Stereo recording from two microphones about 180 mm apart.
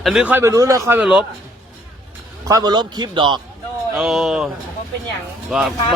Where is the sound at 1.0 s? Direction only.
5° right (ahead or behind).